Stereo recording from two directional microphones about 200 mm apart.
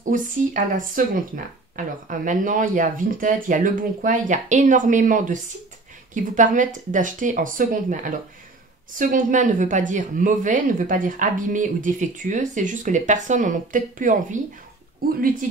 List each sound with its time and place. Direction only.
0.1 s speech: 40° right (ahead or behind)